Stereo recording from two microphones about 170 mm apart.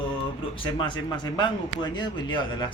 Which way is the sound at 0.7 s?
25° left (ahead or behind).